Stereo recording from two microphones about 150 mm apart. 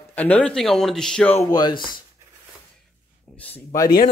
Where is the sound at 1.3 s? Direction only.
25° left (ahead or behind).